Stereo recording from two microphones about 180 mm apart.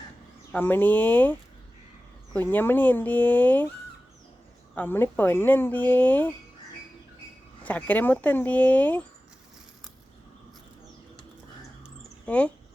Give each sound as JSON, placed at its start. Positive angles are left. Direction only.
{"t": 0.5, "sound": "speech", "side_deg": 10}
{"t": 4.7, "sound": "speech", "side_deg": 10}
{"t": 7.6, "sound": "speech", "side_deg": 10}
{"t": 12.2, "sound": "speech", "side_deg": 5}